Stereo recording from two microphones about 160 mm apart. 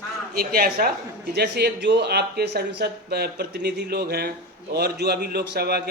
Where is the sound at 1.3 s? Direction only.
90° right.